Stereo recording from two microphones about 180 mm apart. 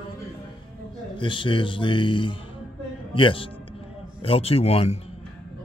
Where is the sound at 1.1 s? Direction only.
25° left (ahead or behind).